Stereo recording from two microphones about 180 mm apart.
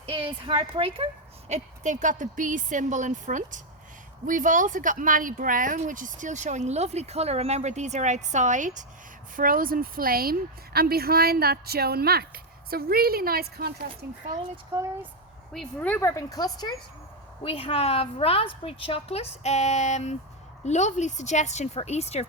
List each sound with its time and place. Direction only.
0.0 s a woman's voice: 30° right (ahead or behind); by 13.7 s 60° right (ahead or behind)
15.5 s a woman's voice: 10° left (ahead or behind)
17.4 s a woman's voice: 30° left (ahead or behind)